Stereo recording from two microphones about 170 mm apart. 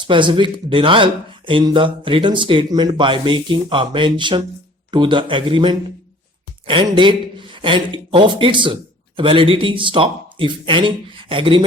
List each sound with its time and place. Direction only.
0.0 s a man's voice: 30° right (ahead or behind)